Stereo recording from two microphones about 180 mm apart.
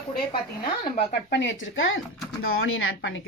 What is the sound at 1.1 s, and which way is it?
Speech, 75° left (ahead or behind).